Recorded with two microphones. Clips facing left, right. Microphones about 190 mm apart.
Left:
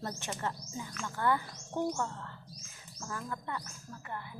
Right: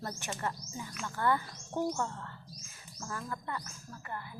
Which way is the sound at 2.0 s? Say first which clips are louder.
Even; 15° right (ahead or behind).